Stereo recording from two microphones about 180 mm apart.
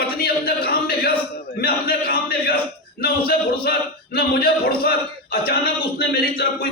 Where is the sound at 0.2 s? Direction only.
55° left (ahead or behind).